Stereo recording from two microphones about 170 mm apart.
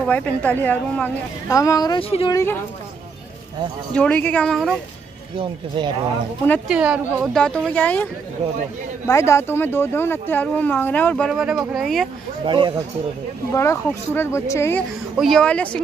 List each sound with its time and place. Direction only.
0.0 s speech: 10° left (ahead or behind)
2.0 s speech: 35° left (ahead or behind)
3.9 s speech: 5° left (ahead or behind)
5.4 s speech: 30° right (ahead or behind)
6.7 s speech: 5° right (ahead or behind)
7.2 s speech: 5° left (ahead or behind)
12.4 s speech: 30° right (ahead or behind)
13.5 s speech: 15° left (ahead or behind)
15.1 s speech: centre (ahead or behind)